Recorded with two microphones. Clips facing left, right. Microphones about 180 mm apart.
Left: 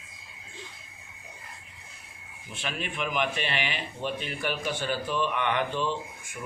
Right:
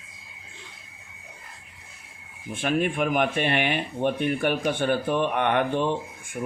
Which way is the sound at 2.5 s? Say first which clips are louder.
Right 11 dB; 50° right (ahead or behind).